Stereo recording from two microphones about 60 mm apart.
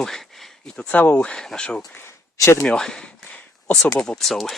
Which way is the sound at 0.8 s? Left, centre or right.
Left.